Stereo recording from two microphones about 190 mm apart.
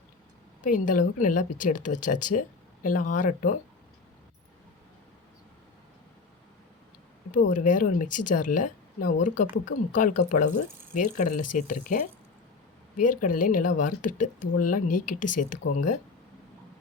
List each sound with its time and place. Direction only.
0.6 s speech: 45° left (ahead or behind)
7.5 s speech: 45° left (ahead or behind)